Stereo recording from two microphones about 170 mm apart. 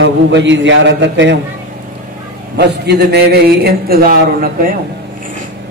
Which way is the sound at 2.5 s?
75° right (ahead or behind).